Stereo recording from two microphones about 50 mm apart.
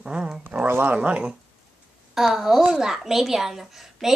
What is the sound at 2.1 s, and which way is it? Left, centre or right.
A woman's voice, centre.